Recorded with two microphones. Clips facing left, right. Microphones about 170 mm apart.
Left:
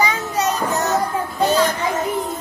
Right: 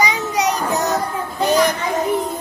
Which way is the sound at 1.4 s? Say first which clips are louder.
Right 1 dB; 15° right (ahead or behind).